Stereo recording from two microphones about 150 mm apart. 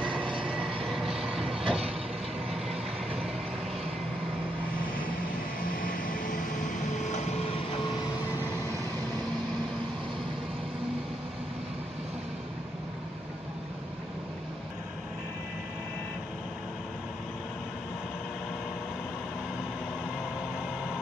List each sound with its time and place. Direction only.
0.0 s train: 10° right (ahead or behind)
1.1 s vehicle: 5° right (ahead or behind)